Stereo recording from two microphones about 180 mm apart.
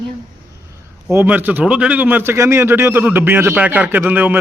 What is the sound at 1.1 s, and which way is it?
A man's voice, 10° right (ahead or behind).